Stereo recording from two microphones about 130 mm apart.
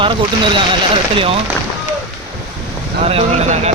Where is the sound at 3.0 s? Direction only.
55° right (ahead or behind).